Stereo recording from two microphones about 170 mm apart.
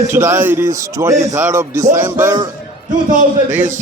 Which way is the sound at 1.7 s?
45° right (ahead or behind).